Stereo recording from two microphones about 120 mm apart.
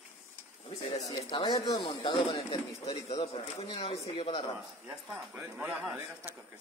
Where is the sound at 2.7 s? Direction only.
60° left (ahead or behind).